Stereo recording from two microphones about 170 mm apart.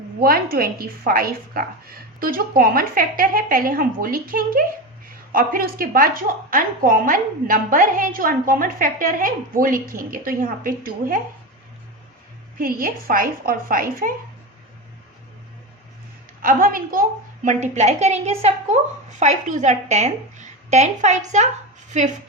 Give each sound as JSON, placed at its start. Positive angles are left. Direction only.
{"t": 0.2, "sound": "a woman's voice", "side_deg": -60}
{"t": 12.5, "sound": "a woman's voice", "side_deg": -55}
{"t": 16.4, "sound": "a woman's voice", "side_deg": -55}